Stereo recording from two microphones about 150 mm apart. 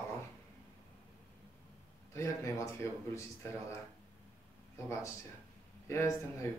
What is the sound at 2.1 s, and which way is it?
Speech, 20° left (ahead or behind).